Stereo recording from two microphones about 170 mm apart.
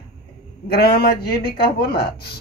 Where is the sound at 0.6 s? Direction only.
65° left (ahead or behind).